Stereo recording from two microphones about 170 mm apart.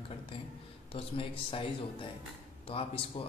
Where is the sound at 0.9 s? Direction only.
30° left (ahead or behind).